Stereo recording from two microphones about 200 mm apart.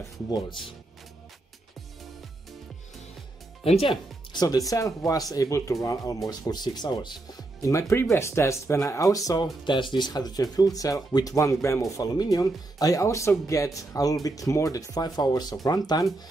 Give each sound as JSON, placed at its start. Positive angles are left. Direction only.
{"t": 0.3, "sound": "speech", "side_deg": 25}
{"t": 3.6, "sound": "speech", "side_deg": 30}